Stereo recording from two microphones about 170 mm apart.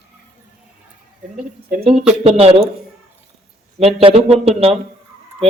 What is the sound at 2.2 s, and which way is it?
Speech, 35° right (ahead or behind).